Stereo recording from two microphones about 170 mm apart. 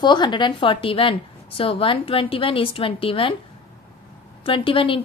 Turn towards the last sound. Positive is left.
turn(degrees=30)  # may be behind; listen again after turning